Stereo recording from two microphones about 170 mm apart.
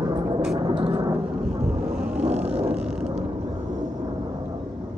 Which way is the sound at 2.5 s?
5° right (ahead or behind).